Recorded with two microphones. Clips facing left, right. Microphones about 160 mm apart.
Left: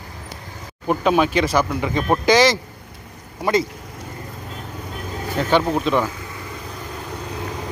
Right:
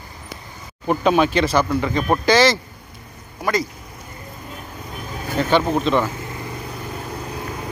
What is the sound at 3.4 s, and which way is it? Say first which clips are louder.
Speech: left 2 dB; 25° left (ahead or behind).